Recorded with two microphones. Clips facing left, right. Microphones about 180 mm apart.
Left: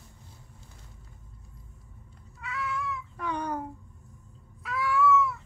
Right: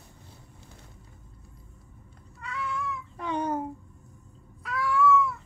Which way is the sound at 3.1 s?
25° right (ahead or behind).